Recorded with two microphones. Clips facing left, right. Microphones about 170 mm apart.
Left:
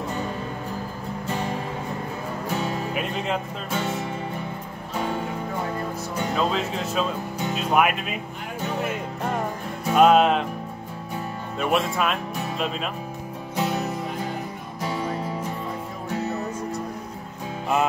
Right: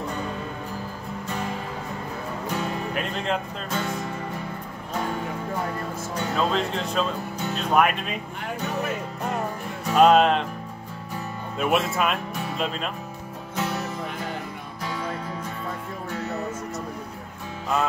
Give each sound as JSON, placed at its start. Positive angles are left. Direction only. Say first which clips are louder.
{"t": 2.9, "sound": "speech", "louder": "even", "side_deg": 5}
{"t": 6.3, "sound": "speech", "louder": "right 1 dB", "side_deg": 5}
{"t": 9.8, "sound": "music", "louder": "even", "side_deg": 5}
{"t": 11.5, "sound": "speech", "louder": "even", "side_deg": 0}
{"t": 13.6, "sound": "music", "louder": "left 3 dB", "side_deg": 15}